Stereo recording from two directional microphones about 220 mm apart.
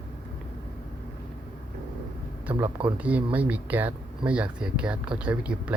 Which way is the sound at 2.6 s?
20° right (ahead or behind).